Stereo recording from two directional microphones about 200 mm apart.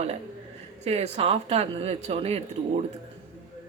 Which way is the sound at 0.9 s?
30° right (ahead or behind).